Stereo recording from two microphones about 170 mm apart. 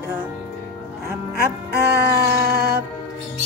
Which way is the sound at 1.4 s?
70° right (ahead or behind).